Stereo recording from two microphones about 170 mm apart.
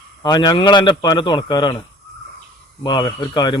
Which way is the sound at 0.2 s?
25° left (ahead or behind).